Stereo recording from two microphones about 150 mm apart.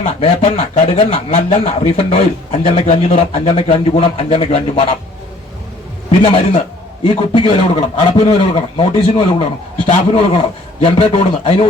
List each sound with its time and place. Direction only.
0.0 s speech: 40° left (ahead or behind)
6.1 s speech: 35° left (ahead or behind)